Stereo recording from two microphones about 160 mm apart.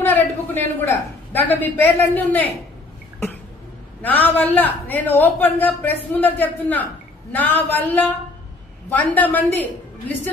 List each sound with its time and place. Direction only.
0.0 s a woman's voice: 10° left (ahead or behind)
4.0 s a man's voice: 10° left (ahead or behind)